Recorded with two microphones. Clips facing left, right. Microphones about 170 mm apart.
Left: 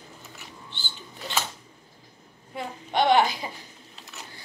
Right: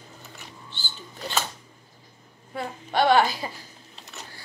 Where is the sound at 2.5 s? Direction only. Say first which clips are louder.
Right 1 dB; 20° left (ahead or behind).